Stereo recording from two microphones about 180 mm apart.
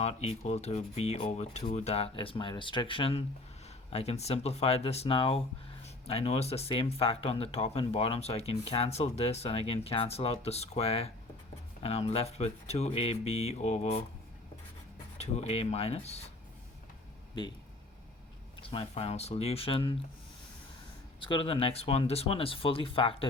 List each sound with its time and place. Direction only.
0.0 s speech: 35° left (ahead or behind)
15.2 s speech: 35° left (ahead or behind)
18.6 s speech: 30° left (ahead or behind)
21.2 s speech: 30° left (ahead or behind)